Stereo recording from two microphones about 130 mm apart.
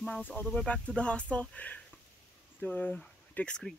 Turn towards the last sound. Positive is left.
turn(degrees=5)  # may be behind; listen again after turning